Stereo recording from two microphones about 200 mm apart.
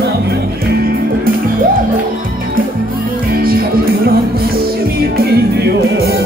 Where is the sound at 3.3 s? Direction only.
50° right (ahead or behind).